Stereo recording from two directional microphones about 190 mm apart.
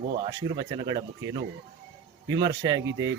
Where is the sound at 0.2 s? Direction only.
20° right (ahead or behind).